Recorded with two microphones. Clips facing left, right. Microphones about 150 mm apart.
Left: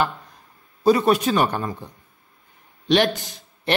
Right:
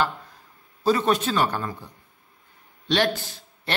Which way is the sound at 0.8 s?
10° left (ahead or behind).